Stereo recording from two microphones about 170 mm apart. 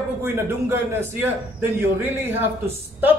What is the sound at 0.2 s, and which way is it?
A man's voice, 15° right (ahead or behind).